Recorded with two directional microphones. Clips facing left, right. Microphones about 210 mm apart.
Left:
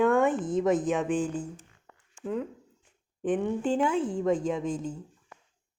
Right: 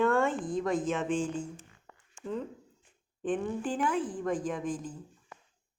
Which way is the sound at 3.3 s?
25° left (ahead or behind).